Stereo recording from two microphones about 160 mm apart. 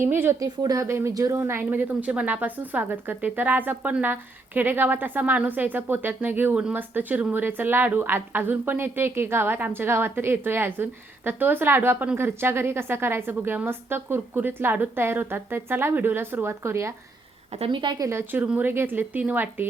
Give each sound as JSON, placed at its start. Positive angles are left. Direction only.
{"t": 0.0, "sound": "speech", "side_deg": -15}
{"t": 17.5, "sound": "speech", "side_deg": -35}
{"t": 18.1, "sound": "speech", "side_deg": -15}